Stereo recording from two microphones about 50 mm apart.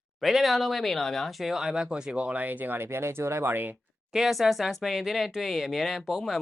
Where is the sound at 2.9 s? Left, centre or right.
Right.